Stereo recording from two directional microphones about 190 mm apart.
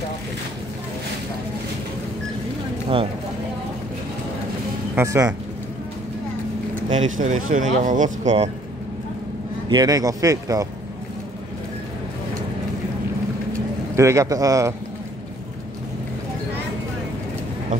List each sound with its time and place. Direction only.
4.9 s a man's voice: 15° right (ahead or behind)
6.9 s speech: 40° right (ahead or behind)
9.7 s speech: 20° right (ahead or behind)
13.9 s a man's voice: 15° right (ahead or behind)